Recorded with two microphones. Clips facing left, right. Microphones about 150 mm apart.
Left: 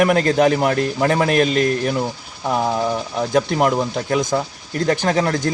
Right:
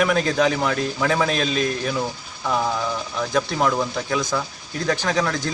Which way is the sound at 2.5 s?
25° left (ahead or behind).